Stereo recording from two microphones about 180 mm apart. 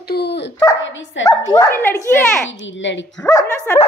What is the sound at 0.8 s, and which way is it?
Speech, 90° left.